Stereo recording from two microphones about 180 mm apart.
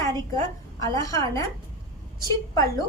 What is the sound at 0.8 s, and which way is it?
A woman's voice, 20° left (ahead or behind).